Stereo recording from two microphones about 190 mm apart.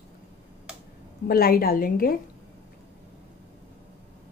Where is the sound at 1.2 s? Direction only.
55° left (ahead or behind).